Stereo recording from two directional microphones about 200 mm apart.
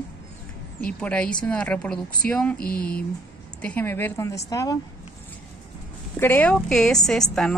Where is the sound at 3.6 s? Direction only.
10° left (ahead or behind).